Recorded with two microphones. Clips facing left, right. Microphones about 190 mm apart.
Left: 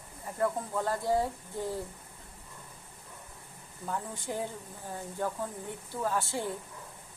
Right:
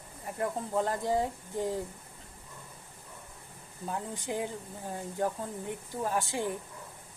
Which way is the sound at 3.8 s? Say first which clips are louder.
Even; 20° right (ahead or behind).